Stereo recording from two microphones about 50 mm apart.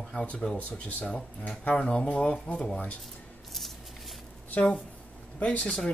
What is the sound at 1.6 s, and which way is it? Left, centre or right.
Speech, left.